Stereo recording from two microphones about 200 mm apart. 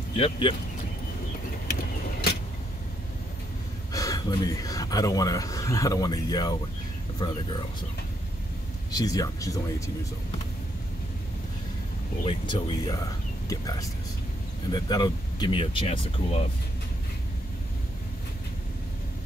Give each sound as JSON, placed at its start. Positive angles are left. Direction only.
{"t": 0.1, "sound": "speech", "side_deg": 25}
{"t": 3.9, "sound": "speech", "side_deg": 15}
{"t": 8.9, "sound": "speech", "side_deg": 20}
{"t": 12.3, "sound": "speech", "side_deg": 25}